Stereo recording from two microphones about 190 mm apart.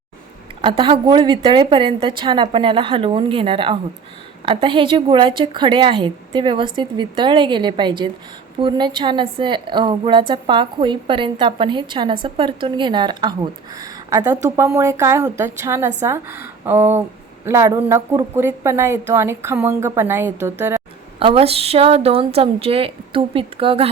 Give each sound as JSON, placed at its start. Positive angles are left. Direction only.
{"t": 0.6, "sound": "a woman's voice", "side_deg": -25}
{"t": 21.2, "sound": "a woman's voice", "side_deg": -30}